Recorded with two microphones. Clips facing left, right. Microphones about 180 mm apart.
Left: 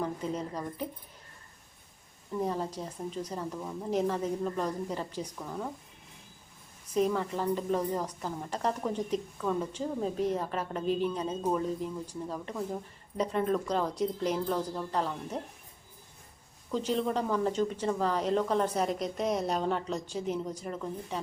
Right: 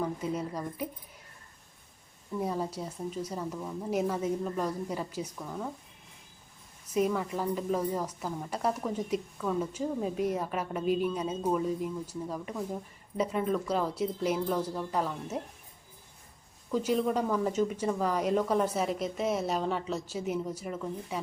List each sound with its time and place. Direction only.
0.0 s speech: 10° right (ahead or behind)
2.4 s speech: 10° right (ahead or behind)
6.9 s speech: 10° right (ahead or behind)
16.7 s speech: 10° right (ahead or behind)